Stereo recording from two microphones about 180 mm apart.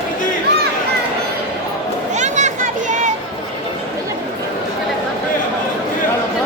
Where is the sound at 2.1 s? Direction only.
40° right (ahead or behind).